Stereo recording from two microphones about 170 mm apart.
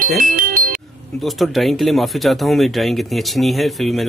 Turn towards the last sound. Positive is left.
turn(degrees=0)  # may be behind; listen again after turning